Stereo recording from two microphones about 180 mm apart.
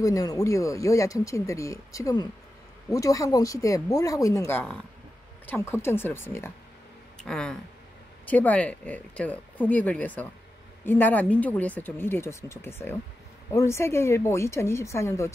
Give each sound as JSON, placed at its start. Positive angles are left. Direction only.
{"t": 0.0, "sound": "speech", "side_deg": 20}